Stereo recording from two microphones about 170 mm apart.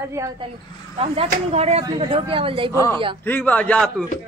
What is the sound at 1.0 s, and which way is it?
Speech, 35° right (ahead or behind).